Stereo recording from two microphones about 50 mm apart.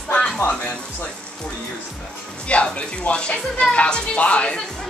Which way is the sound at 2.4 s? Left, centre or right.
Left.